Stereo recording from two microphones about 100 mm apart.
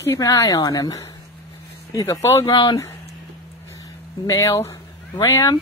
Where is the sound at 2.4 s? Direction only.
50° left (ahead or behind).